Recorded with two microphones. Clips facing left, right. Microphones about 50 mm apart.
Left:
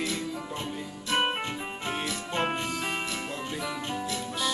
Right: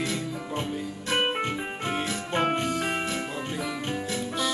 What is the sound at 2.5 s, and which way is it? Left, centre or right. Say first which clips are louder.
Music: right 4 dB; right.